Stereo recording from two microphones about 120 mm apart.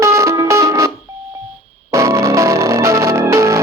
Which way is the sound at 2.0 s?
25° right (ahead or behind).